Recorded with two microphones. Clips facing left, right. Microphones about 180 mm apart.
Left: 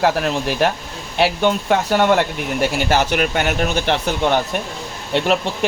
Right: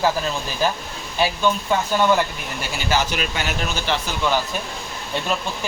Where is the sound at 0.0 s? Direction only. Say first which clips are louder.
Left 4 dB; 70° left (ahead or behind).